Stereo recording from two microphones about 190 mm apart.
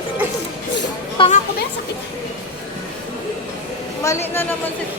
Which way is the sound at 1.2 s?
25° left (ahead or behind).